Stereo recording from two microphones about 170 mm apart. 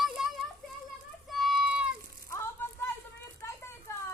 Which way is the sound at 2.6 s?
10° left (ahead or behind).